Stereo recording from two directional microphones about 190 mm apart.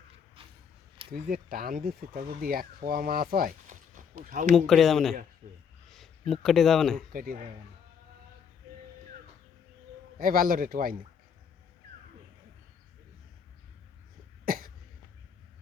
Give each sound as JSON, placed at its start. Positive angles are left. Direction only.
{"t": 0.4, "sound": "a sound", "side_deg": -30}
{"t": 1.1, "sound": "speech", "side_deg": -50}
{"t": 4.5, "sound": "speech", "side_deg": 0}
{"t": 7.1, "sound": "speech", "side_deg": -50}
{"t": 10.2, "sound": "speech", "side_deg": -50}
{"t": 14.4, "sound": "cough", "side_deg": -50}